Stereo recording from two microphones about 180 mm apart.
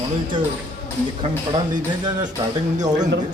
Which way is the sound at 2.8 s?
20° right (ahead or behind).